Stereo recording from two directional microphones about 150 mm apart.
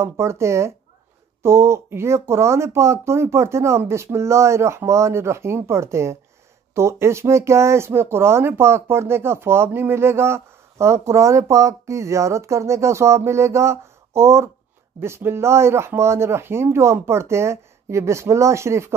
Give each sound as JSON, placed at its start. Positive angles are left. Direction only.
{"t": 0.0, "sound": "speech", "side_deg": -20}